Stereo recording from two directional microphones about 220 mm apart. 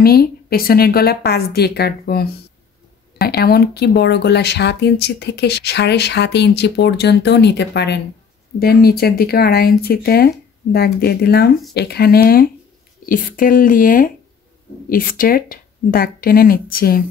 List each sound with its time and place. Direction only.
0.0 s speech: 45° left (ahead or behind)
3.3 s speech: 45° left (ahead or behind)